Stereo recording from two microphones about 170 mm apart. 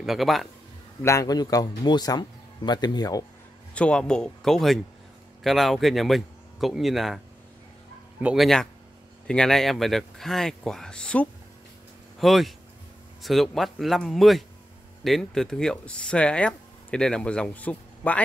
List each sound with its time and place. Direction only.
0.0 s speech: centre (ahead or behind)
1.0 s a man's voice: 20° left (ahead or behind)
3.7 s speech: 5° left (ahead or behind)
8.2 s speech: 5° right (ahead or behind)